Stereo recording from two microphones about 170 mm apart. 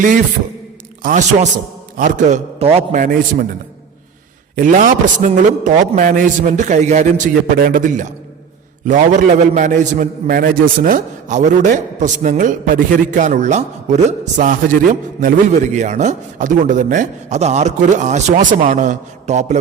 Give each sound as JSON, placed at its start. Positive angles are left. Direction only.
{"t": 1.0, "sound": "a man's voice", "side_deg": -50}
{"t": 4.5, "sound": "a man's voice", "side_deg": -50}